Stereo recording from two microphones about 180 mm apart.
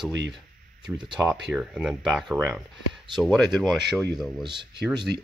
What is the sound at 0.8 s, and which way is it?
Speech, 25° right (ahead or behind).